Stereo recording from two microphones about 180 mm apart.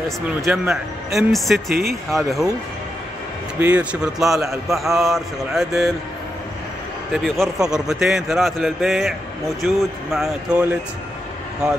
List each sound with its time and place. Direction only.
0.3 s speech: centre (ahead or behind)
3.5 s speech: 10° right (ahead or behind)
7.2 s speech: centre (ahead or behind)